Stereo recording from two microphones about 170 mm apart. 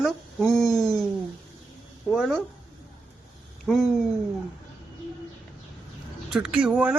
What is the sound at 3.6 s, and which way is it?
Speech, centre (ahead or behind).